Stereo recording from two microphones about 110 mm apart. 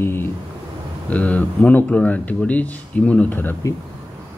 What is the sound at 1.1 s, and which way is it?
Speech, 15° left (ahead or behind).